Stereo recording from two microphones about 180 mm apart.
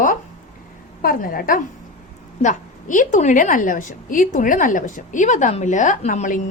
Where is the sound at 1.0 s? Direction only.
50° left (ahead or behind).